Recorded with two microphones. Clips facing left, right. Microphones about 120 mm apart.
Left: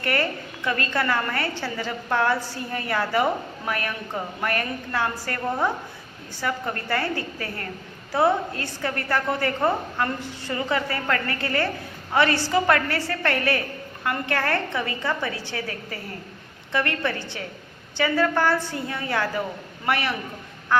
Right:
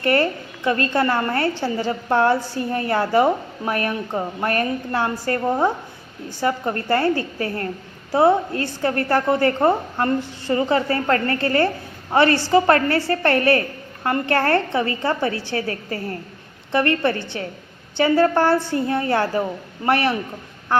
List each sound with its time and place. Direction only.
0.0 s a woman's voice: 35° right (ahead or behind)